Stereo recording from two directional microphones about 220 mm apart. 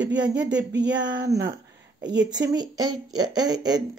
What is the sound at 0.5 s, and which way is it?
Speech, 55° right (ahead or behind).